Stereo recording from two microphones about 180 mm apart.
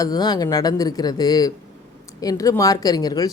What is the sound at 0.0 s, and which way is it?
Speech, 20° left (ahead or behind).